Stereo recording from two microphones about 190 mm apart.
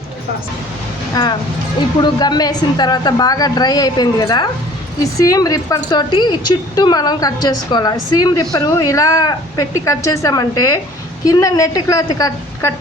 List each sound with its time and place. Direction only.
1.1 s a woman's voice: 20° left (ahead or behind)